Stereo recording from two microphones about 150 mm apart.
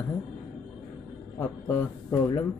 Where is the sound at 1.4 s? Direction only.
15° left (ahead or behind).